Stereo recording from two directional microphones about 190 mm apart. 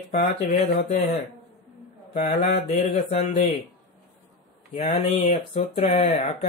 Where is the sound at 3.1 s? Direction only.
40° left (ahead or behind).